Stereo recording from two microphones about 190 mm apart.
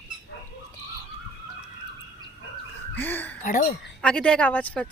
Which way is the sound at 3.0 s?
10° left (ahead or behind).